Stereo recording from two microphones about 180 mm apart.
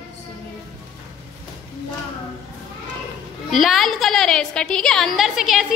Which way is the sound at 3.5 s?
Centre (ahead or behind).